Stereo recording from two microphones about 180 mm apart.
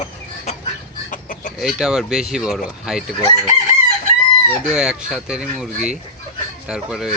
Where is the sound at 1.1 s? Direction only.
45° left (ahead or behind).